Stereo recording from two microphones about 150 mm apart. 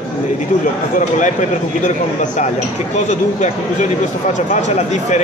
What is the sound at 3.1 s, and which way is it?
Speech, 50° left (ahead or behind).